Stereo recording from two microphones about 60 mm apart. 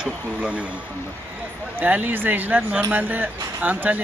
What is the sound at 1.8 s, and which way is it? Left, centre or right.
Speech, right.